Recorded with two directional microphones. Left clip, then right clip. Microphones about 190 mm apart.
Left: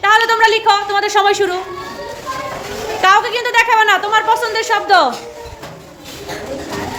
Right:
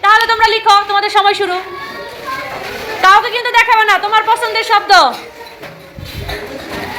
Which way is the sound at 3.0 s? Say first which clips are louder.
Right 3 dB; 25° left (ahead or behind).